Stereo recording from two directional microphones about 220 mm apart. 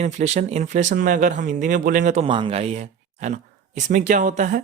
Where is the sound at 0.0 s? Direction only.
30° right (ahead or behind).